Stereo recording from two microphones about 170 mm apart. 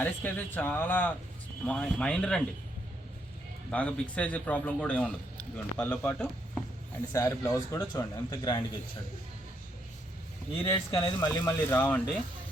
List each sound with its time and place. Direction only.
0.0 s speech: 10° left (ahead or behind)
3.7 s speech: 5° left (ahead or behind)
7.2 s speech: 20° left (ahead or behind)
10.5 s speech: 15° left (ahead or behind)